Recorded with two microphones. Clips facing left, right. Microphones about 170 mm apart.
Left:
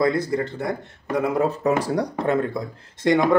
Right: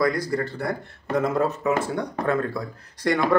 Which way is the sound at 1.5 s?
35° left (ahead or behind).